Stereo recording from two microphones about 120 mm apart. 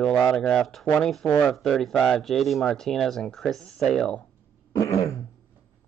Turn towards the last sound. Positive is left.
turn(degrees=30)  # may be behind; listen again after turning